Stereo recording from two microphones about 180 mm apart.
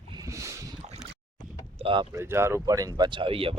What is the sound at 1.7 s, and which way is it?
Boat, 30° right (ahead or behind).